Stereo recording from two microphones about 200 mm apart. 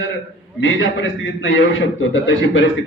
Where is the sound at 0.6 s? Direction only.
75° left (ahead or behind).